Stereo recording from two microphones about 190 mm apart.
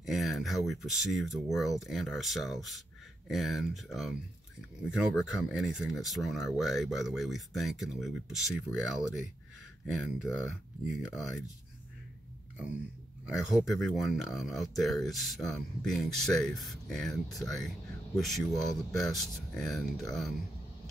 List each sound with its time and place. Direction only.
0.0 s speech: centre (ahead or behind)
9.8 s speech: centre (ahead or behind)
13.2 s speech: 5° right (ahead or behind)